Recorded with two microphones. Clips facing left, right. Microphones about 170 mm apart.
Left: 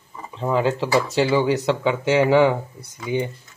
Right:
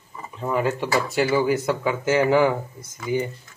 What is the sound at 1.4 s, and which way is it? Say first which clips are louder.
Speech: left 2 dB; 75° left (ahead or behind).